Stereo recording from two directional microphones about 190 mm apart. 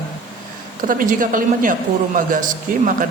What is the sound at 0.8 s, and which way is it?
A man's voice, 45° right (ahead or behind).